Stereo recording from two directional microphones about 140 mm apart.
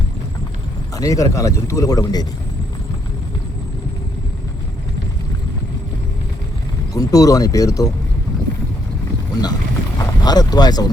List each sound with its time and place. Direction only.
0.9 s speech: 25° left (ahead or behind)
6.9 s speech: 25° left (ahead or behind)
9.3 s speech: 30° left (ahead or behind)